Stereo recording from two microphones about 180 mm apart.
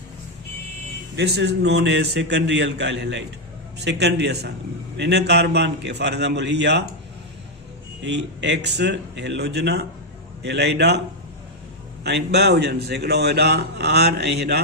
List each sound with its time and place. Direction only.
1.1 s a man's voice: 75° right (ahead or behind)
3.8 s a man's voice: 70° right (ahead or behind)
8.0 s a man's voice: 75° right (ahead or behind)
12.0 s speech: 65° right (ahead or behind)